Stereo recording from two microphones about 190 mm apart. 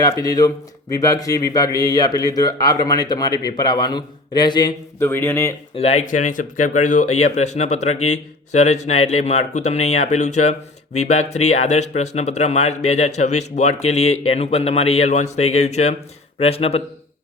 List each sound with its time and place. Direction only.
0.0 s speech: 20° left (ahead or behind)
5.0 s speech: 10° left (ahead or behind)
5.7 s speech: 35° left (ahead or behind)